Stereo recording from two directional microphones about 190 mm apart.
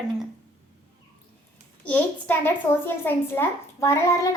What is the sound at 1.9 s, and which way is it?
A child's voice, 10° left (ahead or behind).